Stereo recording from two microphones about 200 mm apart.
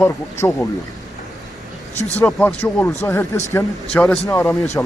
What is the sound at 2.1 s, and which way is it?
Speech, 10° left (ahead or behind).